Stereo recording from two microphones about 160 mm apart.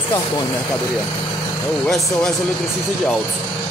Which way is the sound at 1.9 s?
Centre (ahead or behind).